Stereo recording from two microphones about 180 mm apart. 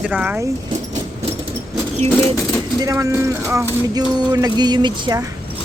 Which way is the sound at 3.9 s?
20° right (ahead or behind).